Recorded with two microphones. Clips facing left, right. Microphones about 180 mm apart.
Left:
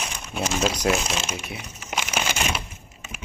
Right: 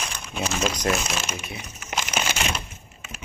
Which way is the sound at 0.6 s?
5° left (ahead or behind).